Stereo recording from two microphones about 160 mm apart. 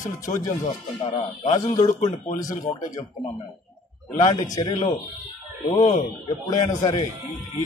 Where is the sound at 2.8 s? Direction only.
25° left (ahead or behind).